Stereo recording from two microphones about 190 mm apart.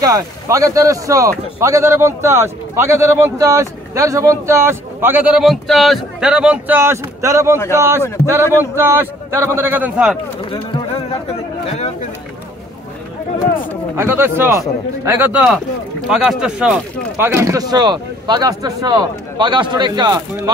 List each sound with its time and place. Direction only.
0.0 s speech: 20° right (ahead or behind)
10.5 s a sound: 30° left (ahead or behind)
13.9 s speech: 10° right (ahead or behind)